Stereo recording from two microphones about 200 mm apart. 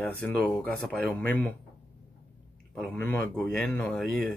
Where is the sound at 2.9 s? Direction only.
10° left (ahead or behind).